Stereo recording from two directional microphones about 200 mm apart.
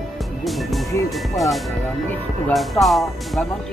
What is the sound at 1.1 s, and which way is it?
Speech, centre (ahead or behind).